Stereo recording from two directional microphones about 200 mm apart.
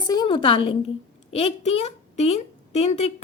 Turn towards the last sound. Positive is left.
turn(degrees=30)  # may be behind; listen again after turning